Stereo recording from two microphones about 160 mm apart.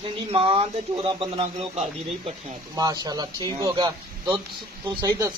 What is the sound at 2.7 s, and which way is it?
Speech, 25° right (ahead or behind).